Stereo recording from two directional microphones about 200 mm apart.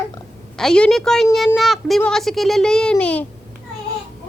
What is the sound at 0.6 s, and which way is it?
A woman's voice, 5° left (ahead or behind).